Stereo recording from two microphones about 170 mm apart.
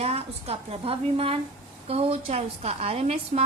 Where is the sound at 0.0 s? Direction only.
35° right (ahead or behind).